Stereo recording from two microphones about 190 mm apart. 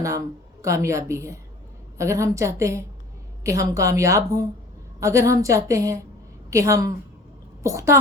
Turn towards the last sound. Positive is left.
turn(degrees=-15)  # may be behind; listen again after turning